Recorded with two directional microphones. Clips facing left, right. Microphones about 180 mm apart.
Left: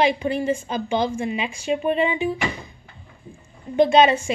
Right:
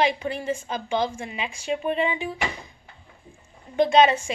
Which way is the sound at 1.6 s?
10° left (ahead or behind).